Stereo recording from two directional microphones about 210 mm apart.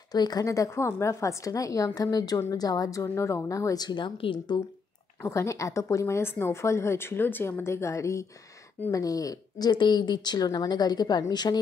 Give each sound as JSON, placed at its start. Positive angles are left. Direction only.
{"t": 0.1, "sound": "a woman's voice", "side_deg": 20}